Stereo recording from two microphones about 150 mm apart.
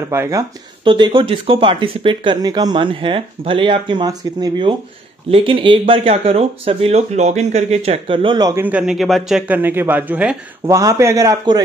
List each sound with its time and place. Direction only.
0.1 s a man's voice: 20° right (ahead or behind)
0.8 s speech: 30° right (ahead or behind)
8.5 s a man's voice: 10° right (ahead or behind)
9.5 s speech: 15° right (ahead or behind)
10.7 s a man's voice: 20° right (ahead or behind)